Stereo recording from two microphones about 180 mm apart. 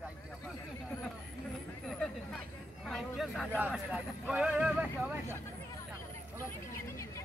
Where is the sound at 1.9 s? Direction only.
Centre (ahead or behind).